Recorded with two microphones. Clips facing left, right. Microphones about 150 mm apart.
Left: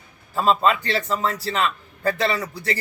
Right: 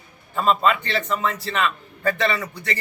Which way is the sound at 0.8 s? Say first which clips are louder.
Left 1 dB; 35° left (ahead or behind).